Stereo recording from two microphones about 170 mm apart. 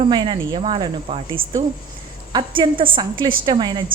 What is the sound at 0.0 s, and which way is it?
Speech, 25° right (ahead or behind).